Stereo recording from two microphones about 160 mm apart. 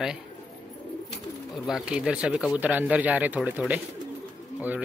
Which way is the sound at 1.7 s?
5° right (ahead or behind).